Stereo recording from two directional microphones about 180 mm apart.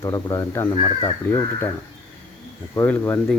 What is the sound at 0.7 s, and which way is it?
Speech, 30° left (ahead or behind).